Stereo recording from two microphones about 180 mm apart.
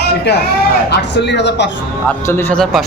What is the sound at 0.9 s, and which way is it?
Speech, 70° left (ahead or behind).